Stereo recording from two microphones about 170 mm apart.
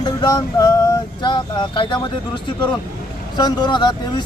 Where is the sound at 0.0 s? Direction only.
25° left (ahead or behind).